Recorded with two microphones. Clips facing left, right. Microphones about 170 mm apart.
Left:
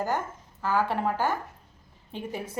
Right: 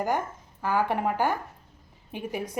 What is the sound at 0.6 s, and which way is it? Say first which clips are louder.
A woman's voice: right 1 dB; 15° right (ahead or behind).